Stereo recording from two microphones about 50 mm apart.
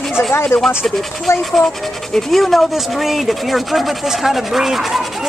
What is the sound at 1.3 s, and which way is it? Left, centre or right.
Speech, left.